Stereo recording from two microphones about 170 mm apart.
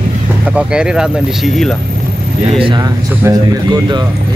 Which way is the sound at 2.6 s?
25° right (ahead or behind).